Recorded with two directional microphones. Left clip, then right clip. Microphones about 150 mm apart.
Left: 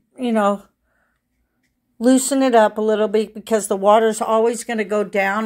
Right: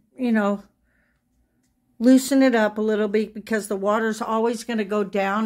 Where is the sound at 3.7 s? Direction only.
20° left (ahead or behind).